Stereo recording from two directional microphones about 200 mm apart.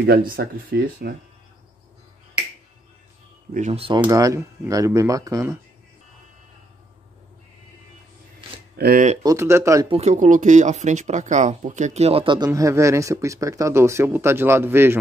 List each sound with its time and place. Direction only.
0.4 s speech: 45° right (ahead or behind)
3.5 s speech: 35° right (ahead or behind)
4.0 s speech: 15° right (ahead or behind)
8.7 s speech: 45° right (ahead or behind)
9.2 s speech: 15° right (ahead or behind)
9.8 s speech: 30° right (ahead or behind); by 15.0 s 10° right (ahead or behind)